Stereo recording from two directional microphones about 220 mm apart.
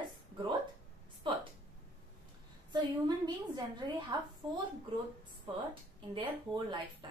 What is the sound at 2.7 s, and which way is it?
A woman's voice, 20° right (ahead or behind).